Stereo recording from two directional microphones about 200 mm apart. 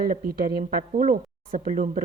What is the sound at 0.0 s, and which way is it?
Speech, 50° right (ahead or behind).